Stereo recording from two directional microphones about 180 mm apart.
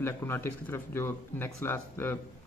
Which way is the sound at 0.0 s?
15° left (ahead or behind).